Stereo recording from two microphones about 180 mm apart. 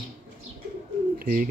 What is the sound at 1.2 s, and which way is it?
Speech, 50° right (ahead or behind).